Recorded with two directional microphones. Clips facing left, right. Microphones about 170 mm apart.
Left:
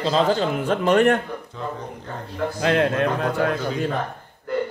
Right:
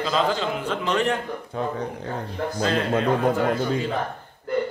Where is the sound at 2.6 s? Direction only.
65° left (ahead or behind).